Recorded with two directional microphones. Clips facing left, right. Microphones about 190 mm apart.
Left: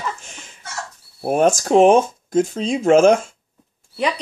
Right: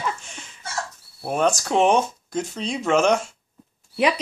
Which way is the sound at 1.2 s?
45° left (ahead or behind).